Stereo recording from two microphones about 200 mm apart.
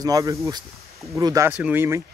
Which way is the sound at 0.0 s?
15° right (ahead or behind).